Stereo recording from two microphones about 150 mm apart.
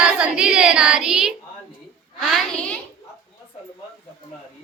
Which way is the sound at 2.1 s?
5° left (ahead or behind).